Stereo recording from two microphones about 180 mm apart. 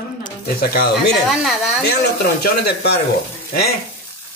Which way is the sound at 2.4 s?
65° left (ahead or behind).